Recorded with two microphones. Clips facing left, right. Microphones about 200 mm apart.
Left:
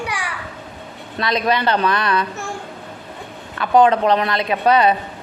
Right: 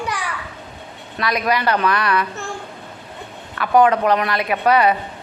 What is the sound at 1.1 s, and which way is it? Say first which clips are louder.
A woman's voice: left 1 dB; 25° left (ahead or behind).